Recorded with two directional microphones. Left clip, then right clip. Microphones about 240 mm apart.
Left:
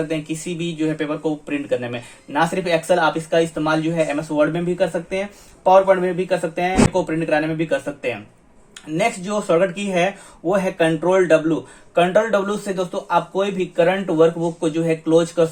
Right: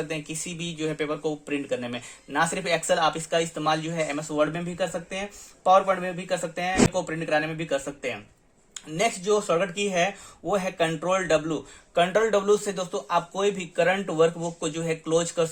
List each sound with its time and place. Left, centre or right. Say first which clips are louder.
0.1 s speech: left 8 dB; right